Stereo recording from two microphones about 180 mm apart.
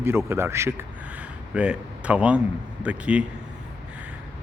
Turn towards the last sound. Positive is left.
turn(degrees=-5)  # may be behind; listen again after turning